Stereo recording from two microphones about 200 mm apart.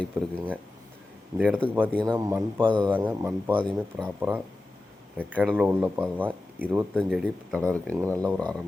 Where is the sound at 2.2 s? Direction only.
15° right (ahead or behind).